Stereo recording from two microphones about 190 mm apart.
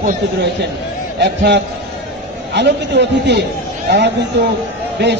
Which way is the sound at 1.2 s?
65° right (ahead or behind).